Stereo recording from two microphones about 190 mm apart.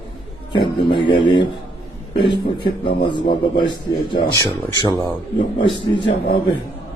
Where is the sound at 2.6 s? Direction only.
25° left (ahead or behind).